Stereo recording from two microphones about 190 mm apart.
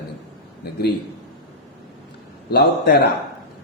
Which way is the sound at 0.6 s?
60° left (ahead or behind).